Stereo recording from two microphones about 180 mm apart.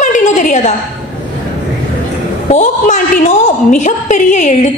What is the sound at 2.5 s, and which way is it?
A woman's voice, 40° left (ahead or behind).